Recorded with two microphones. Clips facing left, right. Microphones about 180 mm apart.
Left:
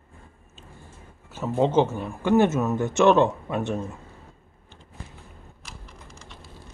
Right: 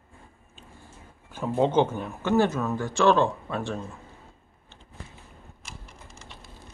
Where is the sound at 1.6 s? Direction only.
10° left (ahead or behind).